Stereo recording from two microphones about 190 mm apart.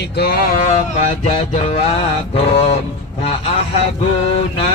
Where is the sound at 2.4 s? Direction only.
30° left (ahead or behind).